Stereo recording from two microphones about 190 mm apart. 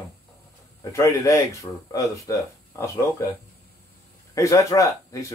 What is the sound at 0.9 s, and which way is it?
Speech, 15° left (ahead or behind).